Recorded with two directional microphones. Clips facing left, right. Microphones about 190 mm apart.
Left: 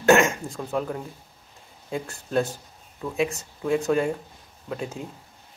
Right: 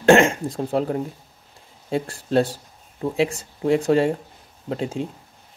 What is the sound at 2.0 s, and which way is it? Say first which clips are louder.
Speech: right 4 dB; 35° right (ahead or behind).